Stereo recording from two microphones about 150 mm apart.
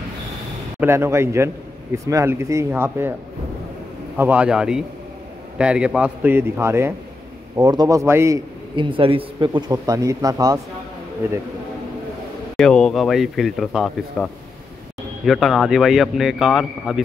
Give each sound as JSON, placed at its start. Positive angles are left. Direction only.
{"t": 0.7, "sound": "a man's voice", "side_deg": -15}
{"t": 4.2, "sound": "a man's voice", "side_deg": -10}
{"t": 8.7, "sound": "speech", "side_deg": -35}
{"t": 12.5, "sound": "speech", "side_deg": 5}